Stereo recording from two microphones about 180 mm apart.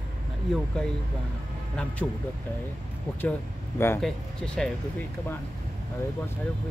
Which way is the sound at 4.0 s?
5° left (ahead or behind).